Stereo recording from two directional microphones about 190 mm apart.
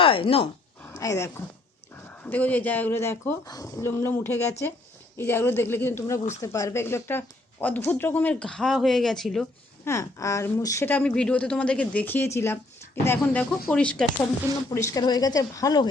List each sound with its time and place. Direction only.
0.0 s speech: 30° left (ahead or behind)
0.9 s speech: 15° left (ahead or behind)
9.8 s speech: 15° left (ahead or behind)
14.7 s a woman's voice: 15° left (ahead or behind)